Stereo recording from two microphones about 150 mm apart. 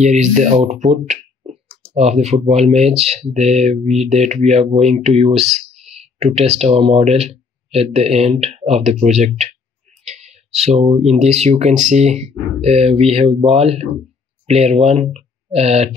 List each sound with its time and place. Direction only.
0.0 s speech: 50° right (ahead or behind)